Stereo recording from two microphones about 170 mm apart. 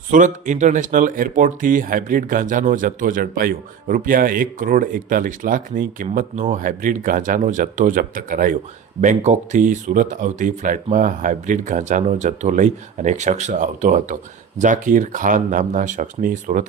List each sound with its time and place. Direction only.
0.1 s speech: 50° right (ahead or behind)